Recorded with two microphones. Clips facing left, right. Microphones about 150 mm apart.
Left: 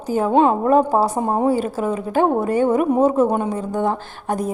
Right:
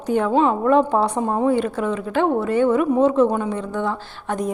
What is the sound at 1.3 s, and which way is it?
A woman's voice, 35° left (ahead or behind).